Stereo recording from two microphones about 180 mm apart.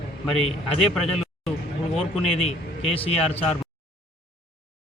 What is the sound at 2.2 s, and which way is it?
Speech, 35° left (ahead or behind).